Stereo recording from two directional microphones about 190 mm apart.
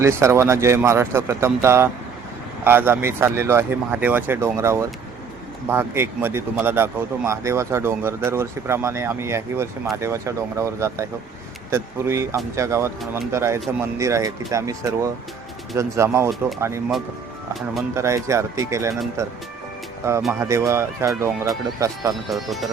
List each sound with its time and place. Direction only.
0.0 s speech: 15° right (ahead or behind)
17.9 s speech: 15° right (ahead or behind)
20.0 s speech: 15° right (ahead or behind)
22.3 s speech: centre (ahead or behind)